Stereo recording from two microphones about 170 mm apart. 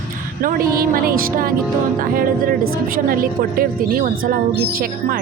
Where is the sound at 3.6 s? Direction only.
55° right (ahead or behind).